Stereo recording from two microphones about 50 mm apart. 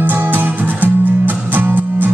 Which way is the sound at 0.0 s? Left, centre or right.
Right.